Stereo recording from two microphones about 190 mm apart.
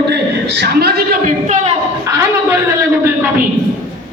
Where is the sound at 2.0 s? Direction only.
15° right (ahead or behind).